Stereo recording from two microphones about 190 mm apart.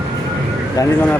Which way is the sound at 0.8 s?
20° left (ahead or behind).